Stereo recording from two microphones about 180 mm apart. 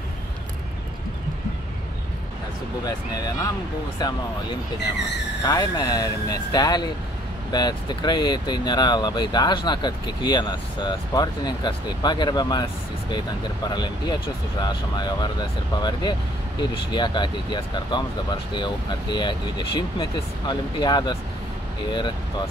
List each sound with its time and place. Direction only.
2.8 s speech: 20° left (ahead or behind)
13.7 s speech: 25° left (ahead or behind)